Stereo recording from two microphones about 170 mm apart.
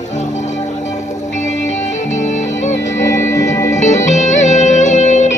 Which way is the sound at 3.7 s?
45° left (ahead or behind).